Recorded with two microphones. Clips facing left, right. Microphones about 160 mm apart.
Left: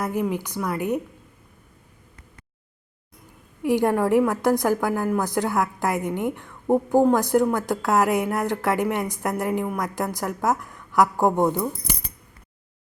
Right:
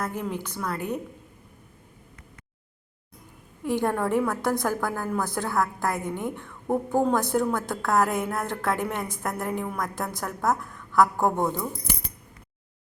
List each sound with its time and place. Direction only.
0.0 s a woman's voice: 10° left (ahead or behind)
3.6 s a woman's voice: 15° left (ahead or behind)
10.6 s a woman's voice: 15° left (ahead or behind)